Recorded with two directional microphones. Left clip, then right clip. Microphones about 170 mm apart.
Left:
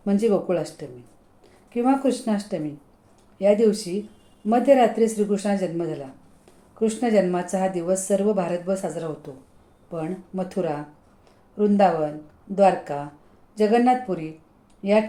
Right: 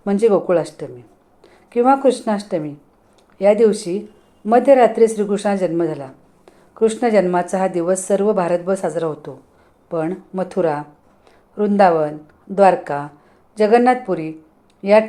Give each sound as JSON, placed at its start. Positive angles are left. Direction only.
{"t": 0.0, "sound": "a woman's voice", "side_deg": -20}